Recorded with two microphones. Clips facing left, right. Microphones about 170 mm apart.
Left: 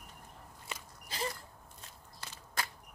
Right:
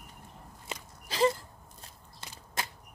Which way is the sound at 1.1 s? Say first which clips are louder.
Right 12 dB; 85° right.